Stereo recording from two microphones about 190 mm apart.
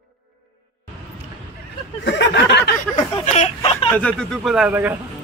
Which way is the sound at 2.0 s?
65° left (ahead or behind).